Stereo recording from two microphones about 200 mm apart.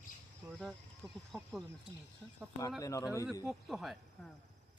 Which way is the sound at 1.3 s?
Centre (ahead or behind).